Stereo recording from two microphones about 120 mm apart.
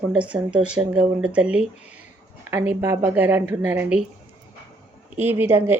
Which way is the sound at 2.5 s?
20° right (ahead or behind).